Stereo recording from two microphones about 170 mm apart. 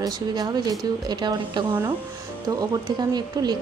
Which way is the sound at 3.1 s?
25° right (ahead or behind).